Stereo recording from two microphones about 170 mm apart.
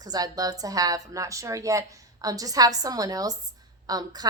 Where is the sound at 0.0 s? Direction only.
20° right (ahead or behind).